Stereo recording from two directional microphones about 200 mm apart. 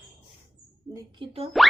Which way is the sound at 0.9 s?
30° right (ahead or behind).